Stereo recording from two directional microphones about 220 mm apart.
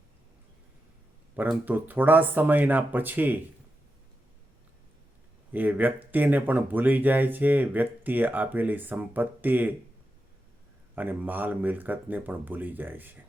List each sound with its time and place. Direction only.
1.4 s speech: 10° right (ahead or behind)
5.5 s speech: 10° right (ahead or behind)
10.9 s speech: 10° right (ahead or behind)